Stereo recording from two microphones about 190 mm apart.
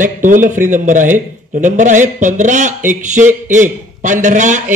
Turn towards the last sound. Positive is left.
turn(degrees=-40)  # may be behind; listen again after turning